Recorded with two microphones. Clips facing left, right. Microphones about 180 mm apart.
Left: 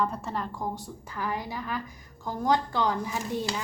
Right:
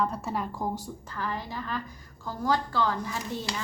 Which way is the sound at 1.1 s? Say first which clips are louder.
Left 2 dB; 10° left (ahead or behind).